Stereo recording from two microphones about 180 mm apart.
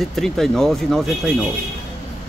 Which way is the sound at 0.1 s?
Centre (ahead or behind).